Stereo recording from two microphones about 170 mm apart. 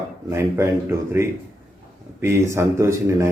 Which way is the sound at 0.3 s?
15° right (ahead or behind).